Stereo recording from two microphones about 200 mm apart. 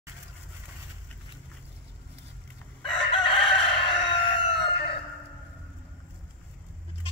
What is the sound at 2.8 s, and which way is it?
Chicken, 25° left (ahead or behind).